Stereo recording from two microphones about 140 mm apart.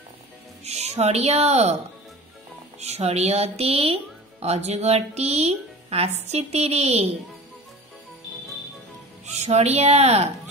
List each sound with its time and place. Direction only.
0.7 s speech: 50° right (ahead or behind)
2.8 s speech: 50° right (ahead or behind)
9.2 s speech: 50° right (ahead or behind)